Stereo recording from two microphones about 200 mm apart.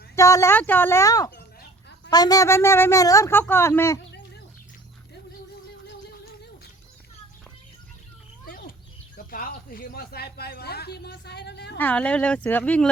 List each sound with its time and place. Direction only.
0.2 s a woman's voice: 15° left (ahead or behind)
8.4 s bird: 45° left (ahead or behind)
9.1 s speech: 45° left (ahead or behind)
11.8 s speech: 5° left (ahead or behind)